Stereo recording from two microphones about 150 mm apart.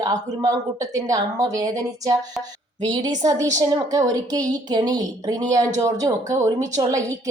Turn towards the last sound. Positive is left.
turn(degrees=-20)  # may be behind; listen again after turning